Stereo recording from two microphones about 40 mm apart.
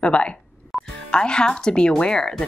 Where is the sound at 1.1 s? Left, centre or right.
Left.